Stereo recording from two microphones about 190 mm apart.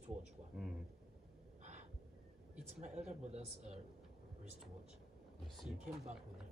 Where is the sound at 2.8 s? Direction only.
35° right (ahead or behind).